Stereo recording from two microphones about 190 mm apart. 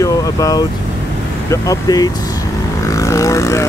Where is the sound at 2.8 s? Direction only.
15° left (ahead or behind).